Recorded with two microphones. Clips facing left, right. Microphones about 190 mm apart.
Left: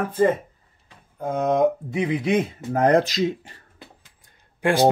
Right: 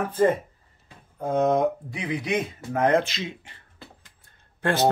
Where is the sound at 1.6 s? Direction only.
25° left (ahead or behind); by 3.6 s 40° left (ahead or behind).